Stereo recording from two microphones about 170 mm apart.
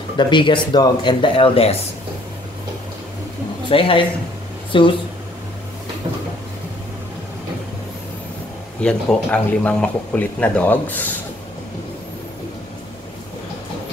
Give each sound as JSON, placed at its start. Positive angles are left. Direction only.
{"t": 0.2, "sound": "speech", "side_deg": 30}
{"t": 3.6, "sound": "speech", "side_deg": 30}
{"t": 8.8, "sound": "speech", "side_deg": 5}